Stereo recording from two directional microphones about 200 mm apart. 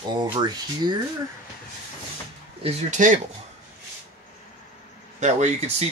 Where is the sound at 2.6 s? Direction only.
40° right (ahead or behind).